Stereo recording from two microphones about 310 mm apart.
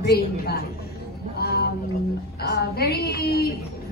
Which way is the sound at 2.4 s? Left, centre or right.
Left.